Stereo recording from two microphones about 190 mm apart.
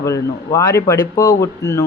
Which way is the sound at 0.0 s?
15° left (ahead or behind).